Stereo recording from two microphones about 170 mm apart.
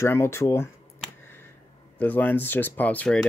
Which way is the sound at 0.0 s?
15° left (ahead or behind).